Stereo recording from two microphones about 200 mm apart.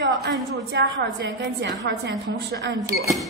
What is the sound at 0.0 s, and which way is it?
A woman's voice, 65° right (ahead or behind).